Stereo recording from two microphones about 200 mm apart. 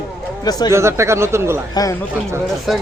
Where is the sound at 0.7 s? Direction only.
15° right (ahead or behind).